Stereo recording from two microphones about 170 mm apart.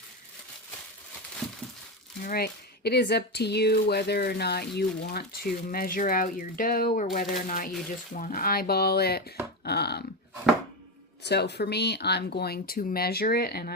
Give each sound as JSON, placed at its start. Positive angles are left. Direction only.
{"t": 2.2, "sound": "speech", "side_deg": 65}
{"t": 11.2, "sound": "speech", "side_deg": 80}